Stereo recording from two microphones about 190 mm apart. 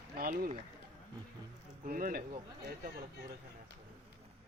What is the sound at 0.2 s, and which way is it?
Speech, 50° right (ahead or behind).